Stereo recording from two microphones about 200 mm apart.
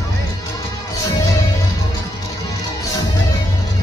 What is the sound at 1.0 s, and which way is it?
Music, 15° left (ahead or behind).